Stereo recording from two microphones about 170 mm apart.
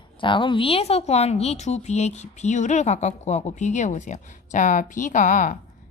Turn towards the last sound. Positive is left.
turn(degrees=50)  # may be behind; listen again after turning